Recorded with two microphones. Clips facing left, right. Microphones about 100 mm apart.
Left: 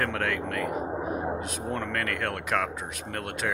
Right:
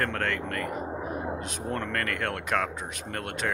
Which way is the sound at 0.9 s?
5° left (ahead or behind).